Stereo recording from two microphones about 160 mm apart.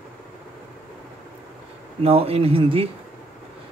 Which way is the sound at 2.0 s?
40° right (ahead or behind).